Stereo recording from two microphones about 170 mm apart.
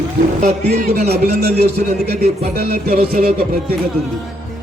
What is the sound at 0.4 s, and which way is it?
Music, 60° right (ahead or behind).